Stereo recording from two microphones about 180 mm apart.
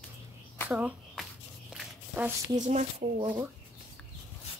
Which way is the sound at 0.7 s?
5° right (ahead or behind).